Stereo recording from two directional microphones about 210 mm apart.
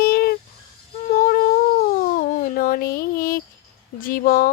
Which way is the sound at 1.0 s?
35° left (ahead or behind).